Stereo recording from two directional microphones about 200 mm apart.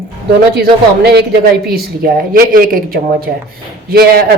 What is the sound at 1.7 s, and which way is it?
Speech, 50° right (ahead or behind).